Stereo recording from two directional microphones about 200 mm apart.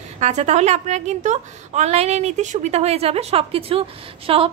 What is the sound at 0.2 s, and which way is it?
A woman's voice, 35° right (ahead or behind).